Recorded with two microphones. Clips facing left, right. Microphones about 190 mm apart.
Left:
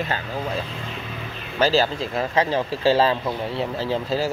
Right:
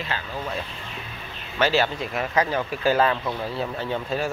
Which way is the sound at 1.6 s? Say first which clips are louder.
Left 2 dB; 35° left (ahead or behind).